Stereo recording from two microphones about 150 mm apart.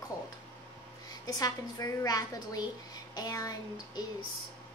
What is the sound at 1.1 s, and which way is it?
A woman's voice, 25° left (ahead or behind).